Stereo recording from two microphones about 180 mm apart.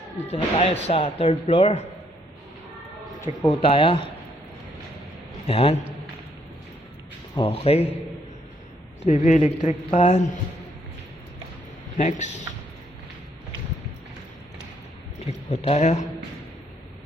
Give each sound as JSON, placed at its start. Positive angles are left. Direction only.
{"t": 0.3, "sound": "speech", "side_deg": 40}
{"t": 3.3, "sound": "a man's voice", "side_deg": -20}
{"t": 3.6, "sound": "speech", "side_deg": 30}
{"t": 5.5, "sound": "speech", "side_deg": 35}
{"t": 7.3, "sound": "speech", "side_deg": 30}
{"t": 9.0, "sound": "speech", "side_deg": 40}
{"t": 11.9, "sound": "speech", "side_deg": 40}
{"t": 15.4, "sound": "speech", "side_deg": 35}